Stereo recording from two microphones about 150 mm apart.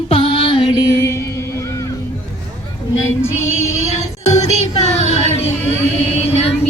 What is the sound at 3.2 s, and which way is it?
Female singing, 15° left (ahead or behind).